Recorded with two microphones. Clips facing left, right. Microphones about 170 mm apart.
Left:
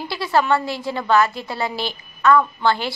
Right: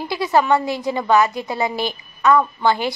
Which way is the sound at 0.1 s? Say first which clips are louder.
Right 2 dB; 15° right (ahead or behind).